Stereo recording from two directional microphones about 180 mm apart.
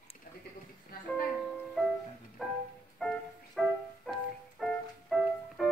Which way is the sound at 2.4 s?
Centre (ahead or behind).